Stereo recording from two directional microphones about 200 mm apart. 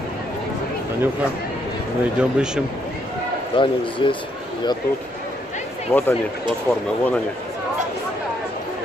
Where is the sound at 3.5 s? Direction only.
25° left (ahead or behind).